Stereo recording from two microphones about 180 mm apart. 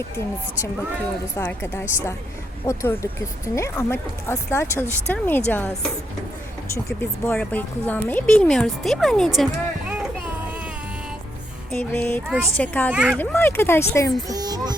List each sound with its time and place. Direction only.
1.4 s speech: 10° left (ahead or behind)
7.0 s speech: 10° left (ahead or behind)
11.7 s speech: 10° left (ahead or behind)
12.9 s speech: 5° right (ahead or behind)
13.1 s speech: 15° left (ahead or behind)
14.3 s music: 20° right (ahead or behind)